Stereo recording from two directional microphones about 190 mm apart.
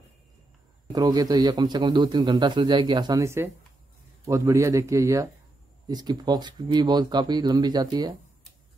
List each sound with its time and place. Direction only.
0.9 s a man's voice: 20° right (ahead or behind)